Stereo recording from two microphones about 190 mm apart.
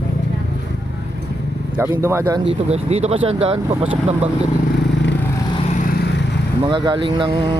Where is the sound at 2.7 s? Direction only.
35° right (ahead or behind).